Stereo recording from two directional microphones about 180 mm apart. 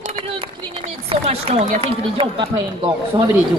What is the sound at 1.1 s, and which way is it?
Speech, 35° right (ahead or behind).